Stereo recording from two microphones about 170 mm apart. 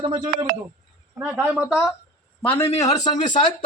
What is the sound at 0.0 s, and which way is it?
Speech, 30° right (ahead or behind).